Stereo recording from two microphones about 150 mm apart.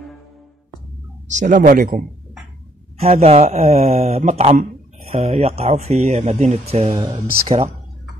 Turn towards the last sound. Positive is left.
turn(degrees=-40)  # may be behind; listen again after turning